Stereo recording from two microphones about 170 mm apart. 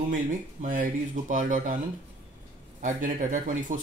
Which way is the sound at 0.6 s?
50° right (ahead or behind).